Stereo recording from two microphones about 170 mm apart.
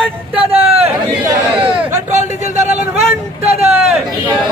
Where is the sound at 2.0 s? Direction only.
45° right (ahead or behind).